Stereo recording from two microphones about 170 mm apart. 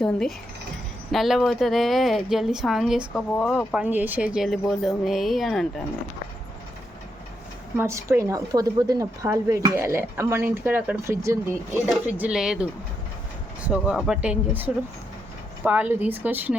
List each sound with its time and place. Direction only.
0.0 s speech: 5° left (ahead or behind)
3.8 s speech: 10° right (ahead or behind)
7.8 s a woman's voice: 15° right (ahead or behind)